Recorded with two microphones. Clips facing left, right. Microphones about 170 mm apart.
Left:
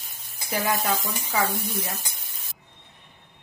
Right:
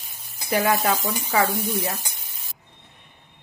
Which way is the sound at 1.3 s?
85° right.